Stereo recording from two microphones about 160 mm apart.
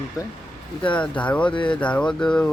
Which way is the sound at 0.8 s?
10° left (ahead or behind).